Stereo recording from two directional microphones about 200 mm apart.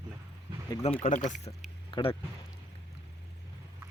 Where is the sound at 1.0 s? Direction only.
40° left (ahead or behind).